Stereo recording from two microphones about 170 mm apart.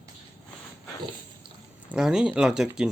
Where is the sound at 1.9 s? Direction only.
5° right (ahead or behind).